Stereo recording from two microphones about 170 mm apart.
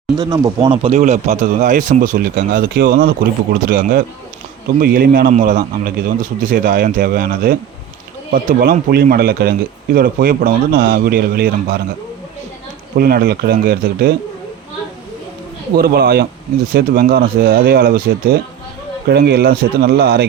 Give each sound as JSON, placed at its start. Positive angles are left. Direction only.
{"t": 0.2, "sound": "speech", "side_deg": -20}
{"t": 13.0, "sound": "speech", "side_deg": -65}
{"t": 15.7, "sound": "speech", "side_deg": -65}